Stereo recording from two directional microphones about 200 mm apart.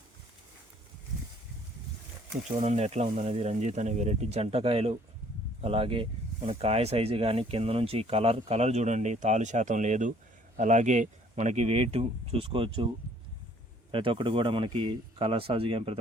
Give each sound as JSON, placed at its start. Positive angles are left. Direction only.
{"t": 2.6, "sound": "speech", "side_deg": -35}
{"t": 13.9, "sound": "speech", "side_deg": -25}